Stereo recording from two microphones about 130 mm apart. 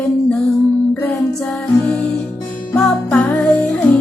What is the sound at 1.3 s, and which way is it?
Music, 5° left (ahead or behind).